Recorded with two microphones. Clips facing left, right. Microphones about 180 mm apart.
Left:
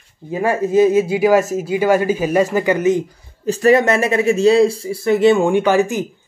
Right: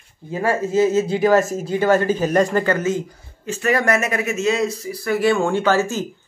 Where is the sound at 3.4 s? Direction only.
35° left (ahead or behind); by 6.0 s 15° left (ahead or behind).